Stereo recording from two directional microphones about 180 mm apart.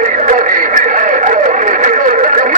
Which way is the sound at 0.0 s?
45° right (ahead or behind).